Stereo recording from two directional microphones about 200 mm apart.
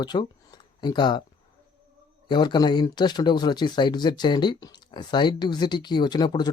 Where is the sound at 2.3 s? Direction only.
20° left (ahead or behind).